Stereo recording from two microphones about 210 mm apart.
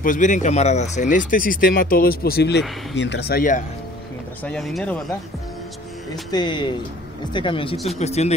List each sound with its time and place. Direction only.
0.0 s speech: 40° left (ahead or behind)
4.4 s speech: 5° left (ahead or behind)
6.3 s speech: 20° left (ahead or behind)
7.7 s speech: centre (ahead or behind)
8.0 s speech: 30° left (ahead or behind)